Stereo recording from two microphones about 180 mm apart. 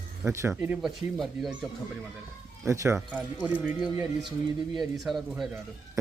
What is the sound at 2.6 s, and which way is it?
Speech, 15° right (ahead or behind).